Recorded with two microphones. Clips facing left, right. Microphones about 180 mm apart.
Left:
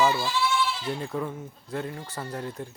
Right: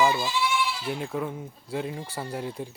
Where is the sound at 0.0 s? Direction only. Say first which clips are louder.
Even; 15° right (ahead or behind).